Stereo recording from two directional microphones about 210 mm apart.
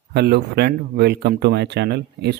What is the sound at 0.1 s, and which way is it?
A man's voice, 50° right (ahead or behind).